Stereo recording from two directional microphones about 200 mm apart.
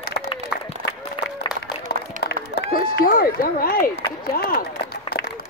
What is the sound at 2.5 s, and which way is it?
Speech, 50° left (ahead or behind).